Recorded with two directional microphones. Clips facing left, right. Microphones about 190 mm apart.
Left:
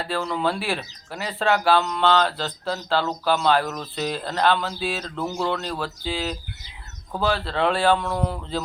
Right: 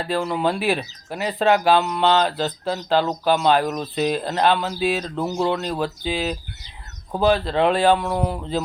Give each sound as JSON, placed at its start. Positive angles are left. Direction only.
{"t": 0.0, "sound": "speech", "side_deg": -15}